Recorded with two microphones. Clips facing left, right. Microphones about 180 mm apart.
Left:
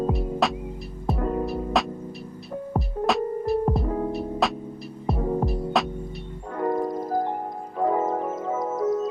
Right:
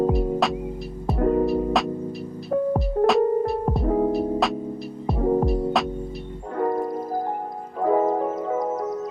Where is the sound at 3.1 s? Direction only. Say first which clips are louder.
Right 4 dB; centre (ahead or behind).